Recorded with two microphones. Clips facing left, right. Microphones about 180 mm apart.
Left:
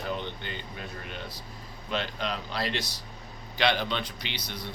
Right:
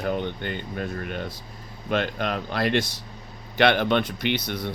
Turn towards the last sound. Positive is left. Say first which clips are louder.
# right 11 dB
turn(degrees=-55)  # may be behind; listen again after turning